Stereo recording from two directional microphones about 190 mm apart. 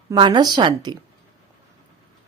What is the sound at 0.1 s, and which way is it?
Speech, 25° right (ahead or behind).